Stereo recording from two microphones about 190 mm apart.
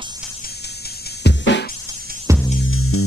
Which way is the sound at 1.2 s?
65° left (ahead or behind).